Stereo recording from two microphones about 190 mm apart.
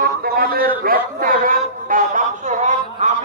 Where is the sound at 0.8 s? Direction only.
50° right (ahead or behind).